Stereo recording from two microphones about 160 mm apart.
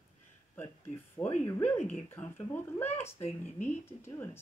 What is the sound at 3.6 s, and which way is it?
Speech, 15° left (ahead or behind).